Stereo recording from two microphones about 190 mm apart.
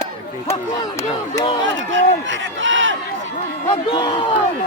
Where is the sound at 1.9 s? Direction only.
80° right.